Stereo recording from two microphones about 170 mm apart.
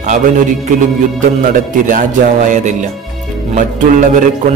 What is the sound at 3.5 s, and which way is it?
Speech, 50° right (ahead or behind).